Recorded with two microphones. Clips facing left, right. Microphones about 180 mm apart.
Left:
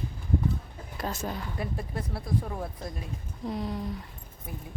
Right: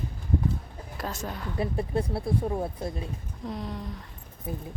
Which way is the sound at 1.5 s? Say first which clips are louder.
Right 6 dB; 25° right (ahead or behind).